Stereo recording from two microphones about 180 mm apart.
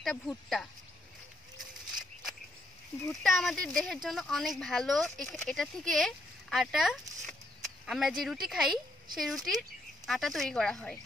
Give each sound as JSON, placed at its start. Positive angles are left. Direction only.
{"t": 0.0, "sound": "speech", "side_deg": 0}
{"t": 3.3, "sound": "speech", "side_deg": 0}